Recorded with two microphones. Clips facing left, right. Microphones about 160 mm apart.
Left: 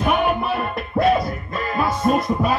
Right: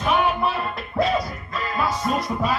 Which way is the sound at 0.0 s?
55° left (ahead or behind).